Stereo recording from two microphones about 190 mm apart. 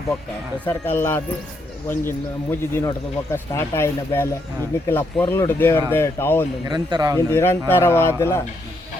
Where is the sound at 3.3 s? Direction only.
15° left (ahead or behind).